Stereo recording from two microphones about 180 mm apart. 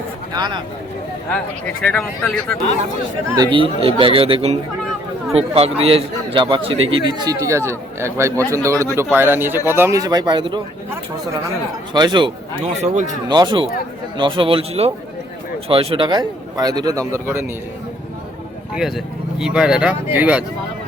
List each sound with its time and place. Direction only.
0.3 s a man's voice: 25° right (ahead or behind)
1.3 s speech: 5° left (ahead or behind)
3.3 s a man's voice: 25° right (ahead or behind)
7.1 s a man's voice: 20° right (ahead or behind)
11.9 s a man's voice: 25° right (ahead or behind)
12.8 s a man's voice: 40° right (ahead or behind)
13.2 s a man's voice: 25° right (ahead or behind)
18.7 s speech: centre (ahead or behind)